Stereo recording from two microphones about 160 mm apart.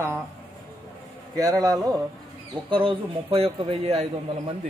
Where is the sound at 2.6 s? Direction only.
35° right (ahead or behind).